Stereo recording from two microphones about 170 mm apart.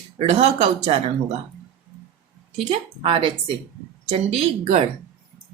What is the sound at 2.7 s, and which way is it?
Speech, 35° right (ahead or behind).